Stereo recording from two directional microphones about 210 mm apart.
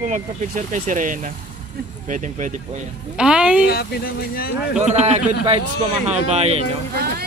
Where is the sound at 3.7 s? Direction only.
45° left (ahead or behind).